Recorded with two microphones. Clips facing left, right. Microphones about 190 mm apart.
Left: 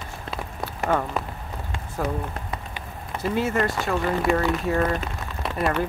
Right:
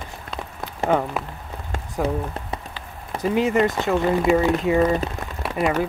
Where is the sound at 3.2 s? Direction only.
15° right (ahead or behind).